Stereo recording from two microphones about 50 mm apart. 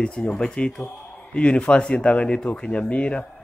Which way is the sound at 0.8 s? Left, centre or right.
Left.